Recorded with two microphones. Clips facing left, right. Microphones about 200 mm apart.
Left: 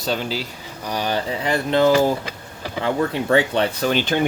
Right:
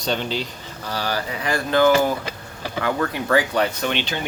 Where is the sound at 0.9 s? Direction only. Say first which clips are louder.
Left 3 dB; 20° left (ahead or behind).